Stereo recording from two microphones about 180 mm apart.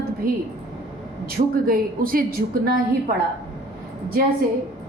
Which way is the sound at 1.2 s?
50° right (ahead or behind).